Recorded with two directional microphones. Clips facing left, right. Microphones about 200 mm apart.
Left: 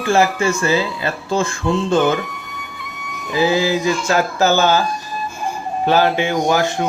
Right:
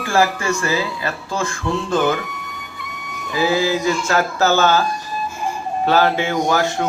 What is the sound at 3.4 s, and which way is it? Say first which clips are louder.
Speech: even; 20° left (ahead or behind).